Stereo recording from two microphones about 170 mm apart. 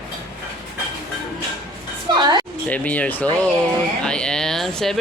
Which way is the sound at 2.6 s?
10° left (ahead or behind).